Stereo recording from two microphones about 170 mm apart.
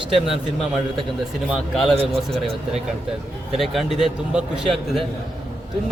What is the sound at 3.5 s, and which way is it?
A man's voice, centre (ahead or behind).